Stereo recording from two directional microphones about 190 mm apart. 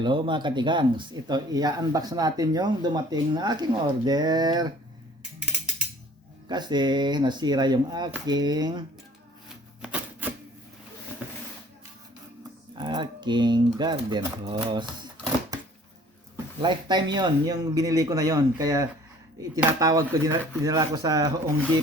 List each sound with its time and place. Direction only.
0.0 s speech: 25° right (ahead or behind)
6.5 s speech: 25° right (ahead or behind)
9.8 s typewriter: 5° right (ahead or behind)
12.4 s typing: 25° right (ahead or behind)
16.6 s speech: 25° right (ahead or behind)